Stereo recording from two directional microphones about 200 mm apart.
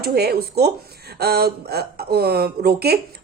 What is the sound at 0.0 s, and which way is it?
Speech, 50° right (ahead or behind).